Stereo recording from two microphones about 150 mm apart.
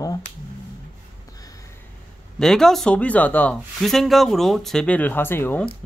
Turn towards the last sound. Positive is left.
turn(degrees=15)  # may be behind; listen again after turning